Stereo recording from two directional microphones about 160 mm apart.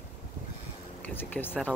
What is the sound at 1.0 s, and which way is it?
Speech, 10° left (ahead or behind).